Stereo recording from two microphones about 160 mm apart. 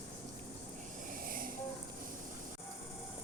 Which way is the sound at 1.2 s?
60° right (ahead or behind).